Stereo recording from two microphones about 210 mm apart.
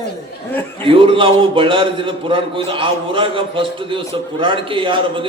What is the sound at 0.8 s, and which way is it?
A man's voice, 25° right (ahead or behind).